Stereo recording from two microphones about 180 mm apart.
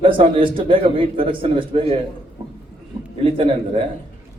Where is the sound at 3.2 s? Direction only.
30° right (ahead or behind).